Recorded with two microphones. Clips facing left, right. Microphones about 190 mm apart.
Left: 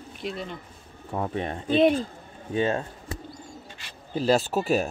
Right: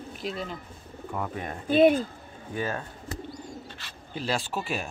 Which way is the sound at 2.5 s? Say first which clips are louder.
Left 6 dB; 25° left (ahead or behind).